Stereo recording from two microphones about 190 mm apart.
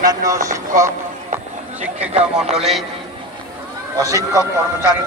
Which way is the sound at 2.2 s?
5° right (ahead or behind).